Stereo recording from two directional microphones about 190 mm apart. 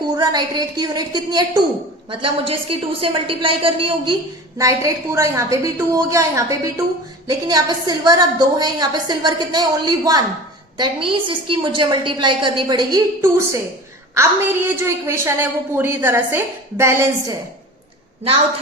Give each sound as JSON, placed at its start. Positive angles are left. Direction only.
{"t": 0.0, "sound": "a woman's voice", "side_deg": -20}
{"t": 14.8, "sound": "a woman's voice", "side_deg": -15}